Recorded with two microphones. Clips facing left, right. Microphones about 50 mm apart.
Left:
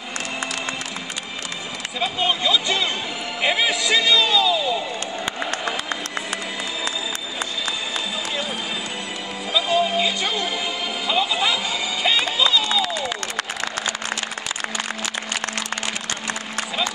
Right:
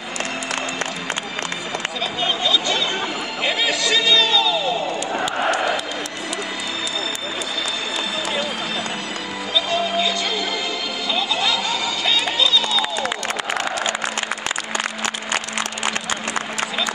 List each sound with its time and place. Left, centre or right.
2.0 s a man's voice: centre
9.5 s music: centre
12.0 s a sound: centre